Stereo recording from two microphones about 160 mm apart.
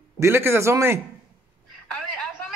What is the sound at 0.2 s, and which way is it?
Speech, 15° right (ahead or behind).